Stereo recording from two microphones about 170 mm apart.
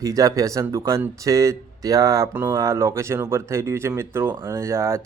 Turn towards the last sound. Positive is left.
turn(degrees=-15)  # may be behind; listen again after turning